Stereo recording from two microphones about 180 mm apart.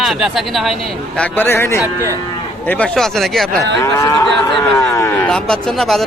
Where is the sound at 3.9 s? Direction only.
20° left (ahead or behind).